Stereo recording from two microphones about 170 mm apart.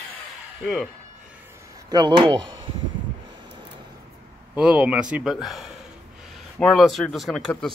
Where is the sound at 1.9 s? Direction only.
25° right (ahead or behind).